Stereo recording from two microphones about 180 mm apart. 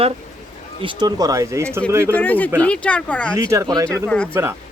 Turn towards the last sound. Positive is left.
turn(degrees=-15)  # may be behind; listen again after turning